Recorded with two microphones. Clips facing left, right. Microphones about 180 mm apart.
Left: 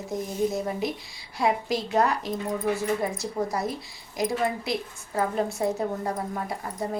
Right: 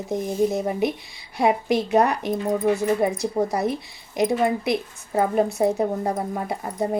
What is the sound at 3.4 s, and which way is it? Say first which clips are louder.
Speech: right 5 dB; 45° right (ahead or behind).